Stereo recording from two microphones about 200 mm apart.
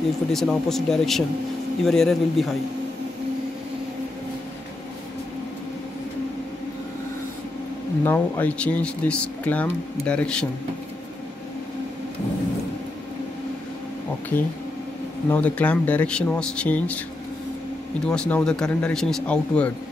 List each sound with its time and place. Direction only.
0.3 s speech: centre (ahead or behind)
8.0 s speech: 10° left (ahead or behind)
14.3 s speech: 10° left (ahead or behind)
18.0 s speech: 5° left (ahead or behind)